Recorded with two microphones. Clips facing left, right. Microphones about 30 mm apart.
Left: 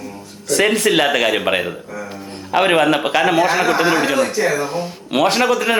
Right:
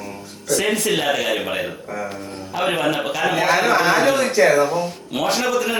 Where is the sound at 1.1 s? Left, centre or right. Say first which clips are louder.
Left 5 dB; left.